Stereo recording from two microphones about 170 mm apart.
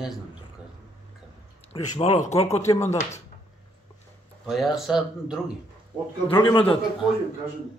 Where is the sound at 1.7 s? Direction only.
40° left (ahead or behind).